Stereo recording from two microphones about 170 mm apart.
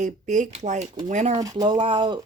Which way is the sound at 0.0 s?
45° right (ahead or behind).